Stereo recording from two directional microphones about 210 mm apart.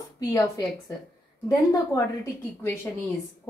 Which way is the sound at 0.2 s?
15° left (ahead or behind).